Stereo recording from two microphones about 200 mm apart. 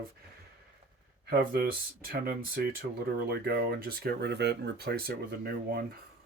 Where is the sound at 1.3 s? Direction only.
50° right (ahead or behind).